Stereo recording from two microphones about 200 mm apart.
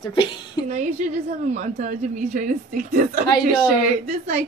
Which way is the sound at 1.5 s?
35° right (ahead or behind).